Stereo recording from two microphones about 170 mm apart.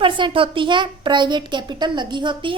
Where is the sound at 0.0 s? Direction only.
30° right (ahead or behind).